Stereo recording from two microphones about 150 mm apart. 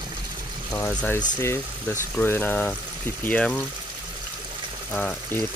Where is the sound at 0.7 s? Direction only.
10° left (ahead or behind).